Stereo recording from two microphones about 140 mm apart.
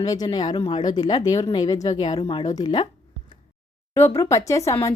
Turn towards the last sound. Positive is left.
turn(degrees=20)  # may be behind; listen again after turning